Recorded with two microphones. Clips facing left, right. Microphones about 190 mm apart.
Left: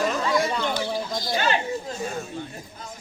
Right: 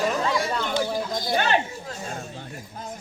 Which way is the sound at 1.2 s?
55° right (ahead or behind).